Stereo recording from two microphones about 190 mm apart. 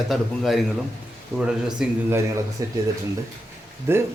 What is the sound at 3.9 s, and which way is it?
Speech, 10° right (ahead or behind).